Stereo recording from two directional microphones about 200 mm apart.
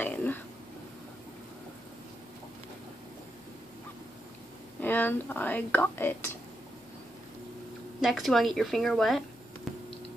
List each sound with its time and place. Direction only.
0.0 s burping: 10° left (ahead or behind)
4.8 s speech: 10° left (ahead or behind)
8.0 s speech: centre (ahead or behind)